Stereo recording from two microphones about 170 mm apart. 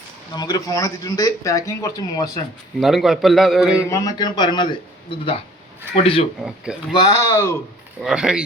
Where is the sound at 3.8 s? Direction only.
20° left (ahead or behind).